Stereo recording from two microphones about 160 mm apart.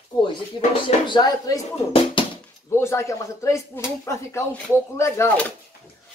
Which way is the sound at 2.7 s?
15° left (ahead or behind).